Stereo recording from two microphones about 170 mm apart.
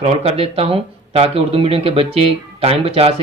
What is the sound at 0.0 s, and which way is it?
Speech, 35° right (ahead or behind).